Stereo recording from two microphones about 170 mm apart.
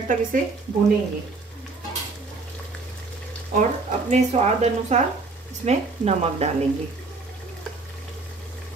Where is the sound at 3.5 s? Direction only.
45° right (ahead or behind).